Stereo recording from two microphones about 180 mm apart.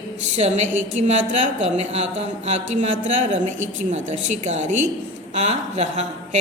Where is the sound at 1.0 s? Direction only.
40° right (ahead or behind).